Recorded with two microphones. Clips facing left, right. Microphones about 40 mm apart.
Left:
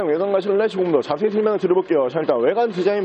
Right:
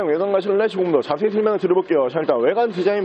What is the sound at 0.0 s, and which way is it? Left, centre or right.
Speech, centre.